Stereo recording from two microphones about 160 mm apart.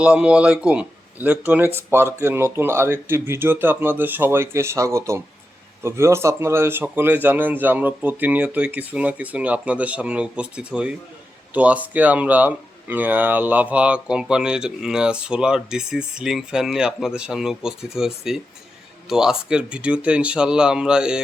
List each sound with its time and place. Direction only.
0.0 s speech: 5° right (ahead or behind)